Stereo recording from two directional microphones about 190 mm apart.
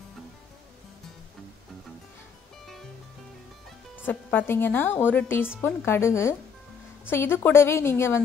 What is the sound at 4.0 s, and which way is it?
A woman's voice, 10° left (ahead or behind).